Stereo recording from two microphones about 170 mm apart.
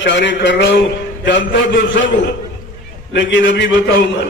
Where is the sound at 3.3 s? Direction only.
90° left.